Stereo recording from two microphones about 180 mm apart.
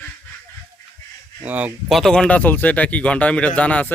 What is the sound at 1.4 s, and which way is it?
Speech, 10° right (ahead or behind).